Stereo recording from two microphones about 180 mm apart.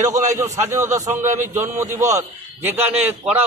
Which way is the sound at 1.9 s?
15° right (ahead or behind).